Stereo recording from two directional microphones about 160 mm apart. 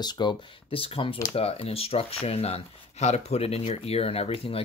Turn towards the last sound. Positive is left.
turn(degrees=40)  # may be behind; listen again after turning